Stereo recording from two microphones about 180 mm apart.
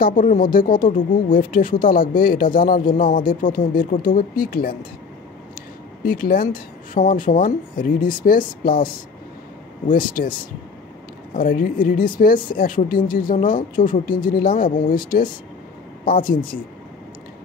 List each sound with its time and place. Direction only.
0.0 s speech: 50° left (ahead or behind)
6.0 s speech: 55° left (ahead or behind)
11.3 s speech: 50° left (ahead or behind)